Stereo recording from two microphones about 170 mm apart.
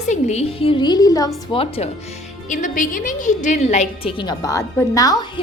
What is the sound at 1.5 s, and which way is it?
Speech, 35° left (ahead or behind).